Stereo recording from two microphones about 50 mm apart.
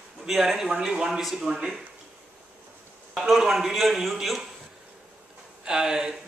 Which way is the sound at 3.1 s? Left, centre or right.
Centre.